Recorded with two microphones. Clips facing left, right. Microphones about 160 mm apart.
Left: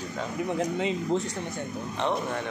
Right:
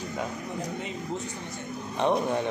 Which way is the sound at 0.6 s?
90° left.